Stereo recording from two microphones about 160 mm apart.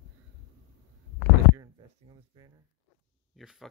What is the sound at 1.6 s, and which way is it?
Speech, 25° right (ahead or behind).